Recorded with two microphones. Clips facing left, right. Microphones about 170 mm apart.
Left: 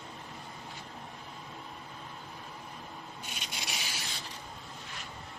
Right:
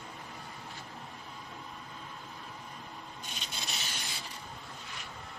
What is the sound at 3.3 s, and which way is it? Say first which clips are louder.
Rub: left 1 dB; 10° left (ahead or behind).